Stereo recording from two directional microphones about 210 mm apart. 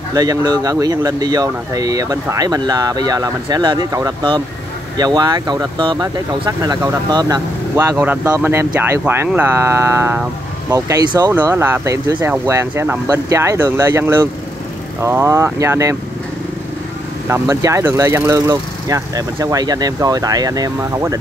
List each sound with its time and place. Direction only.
0.1 s speech: 15° right (ahead or behind)
17.3 s speech: 15° right (ahead or behind)